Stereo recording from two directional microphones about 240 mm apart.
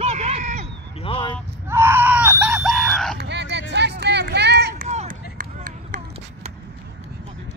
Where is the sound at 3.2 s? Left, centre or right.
Right.